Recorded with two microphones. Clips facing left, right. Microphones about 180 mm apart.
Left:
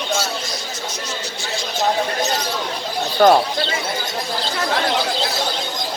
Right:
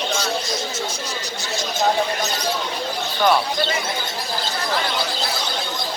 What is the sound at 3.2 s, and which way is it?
Speech, 40° left (ahead or behind).